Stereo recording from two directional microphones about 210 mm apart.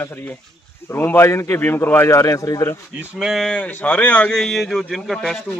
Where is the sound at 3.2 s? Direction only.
Centre (ahead or behind).